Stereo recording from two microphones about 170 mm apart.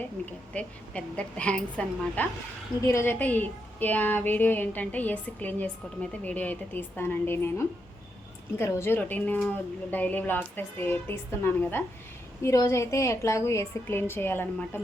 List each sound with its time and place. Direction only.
0.5 s a woman's voice: 5° left (ahead or behind)